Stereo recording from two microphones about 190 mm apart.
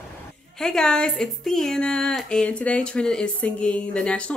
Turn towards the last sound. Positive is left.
turn(degrees=5)  # may be behind; listen again after turning